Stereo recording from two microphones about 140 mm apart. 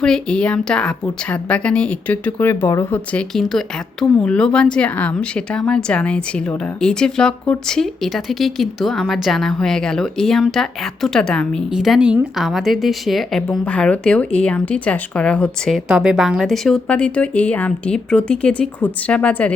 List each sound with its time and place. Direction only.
0.0 s a woman's voice: 5° left (ahead or behind)
3.1 s speech: 5° left (ahead or behind)